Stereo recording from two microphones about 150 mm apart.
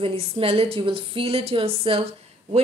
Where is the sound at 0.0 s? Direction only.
40° right (ahead or behind).